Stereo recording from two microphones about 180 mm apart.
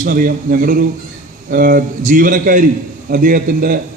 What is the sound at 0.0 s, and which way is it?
A man's voice, 50° right (ahead or behind).